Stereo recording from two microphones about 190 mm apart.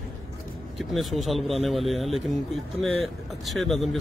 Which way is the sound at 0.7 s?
Centre (ahead or behind).